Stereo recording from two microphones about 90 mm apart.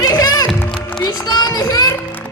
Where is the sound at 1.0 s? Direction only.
45° left (ahead or behind).